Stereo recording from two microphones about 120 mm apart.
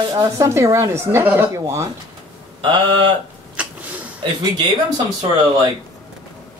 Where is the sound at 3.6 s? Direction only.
15° right (ahead or behind).